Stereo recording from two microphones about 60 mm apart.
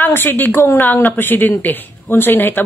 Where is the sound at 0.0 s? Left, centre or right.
Left.